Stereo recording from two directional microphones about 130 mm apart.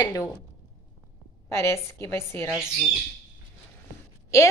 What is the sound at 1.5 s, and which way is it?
Speech, 25° left (ahead or behind).